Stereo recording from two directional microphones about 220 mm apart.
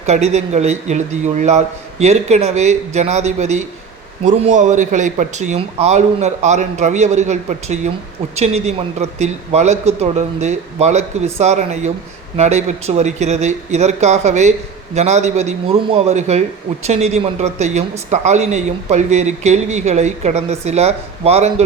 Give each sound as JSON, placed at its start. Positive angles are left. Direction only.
{"t": 0.0, "sound": "speech", "side_deg": -30}